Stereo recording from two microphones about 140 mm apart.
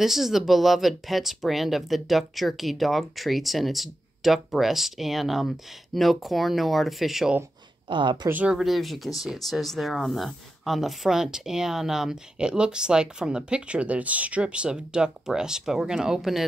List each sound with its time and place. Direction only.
0.0 s speech: centre (ahead or behind)
7.9 s a woman's voice: 35° right (ahead or behind)
8.3 s speech: 10° right (ahead or behind)